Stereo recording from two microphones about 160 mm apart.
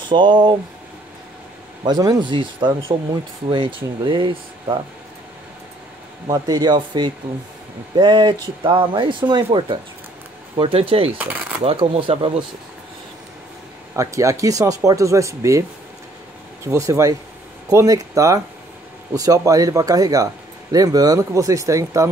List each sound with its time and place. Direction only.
0.1 s speech: 30° right (ahead or behind)
1.9 s speech: 25° right (ahead or behind)
6.2 s speech: 25° right (ahead or behind)
11.1 s speech: 10° right (ahead or behind)
11.6 s speech: 35° right (ahead or behind)
13.9 s speech: 20° right (ahead or behind)
16.6 s speech: 20° right (ahead or behind)